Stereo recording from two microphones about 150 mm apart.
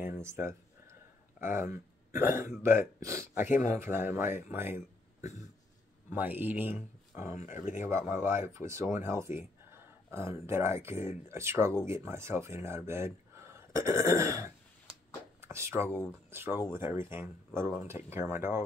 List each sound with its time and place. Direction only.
0.0 s speech: 15° right (ahead or behind)
3.4 s speech: 55° left (ahead or behind)
3.7 s speech: 15° right (ahead or behind)
6.0 s speech: 10° right (ahead or behind)
7.3 s speech: 55° left (ahead or behind)
7.8 s speech: 15° right (ahead or behind)
16.3 s a sound: 15° right (ahead or behind)
17.0 s speech: 15° right (ahead or behind)